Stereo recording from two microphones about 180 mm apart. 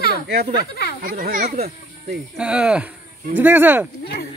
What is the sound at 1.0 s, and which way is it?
Speech, 50° right (ahead or behind).